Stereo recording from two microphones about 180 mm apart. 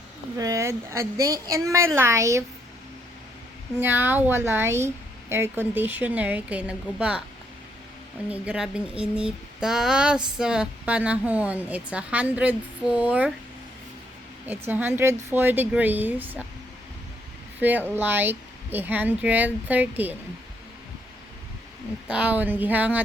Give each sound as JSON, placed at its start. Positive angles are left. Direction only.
{"t": 0.3, "sound": "speech", "side_deg": -20}
{"t": 3.8, "sound": "speech", "side_deg": -10}
{"t": 8.3, "sound": "speech", "side_deg": -5}
{"t": 14.4, "sound": "speech", "side_deg": -10}
{"t": 17.6, "sound": "speech", "side_deg": -10}
{"t": 22.0, "sound": "speech", "side_deg": -5}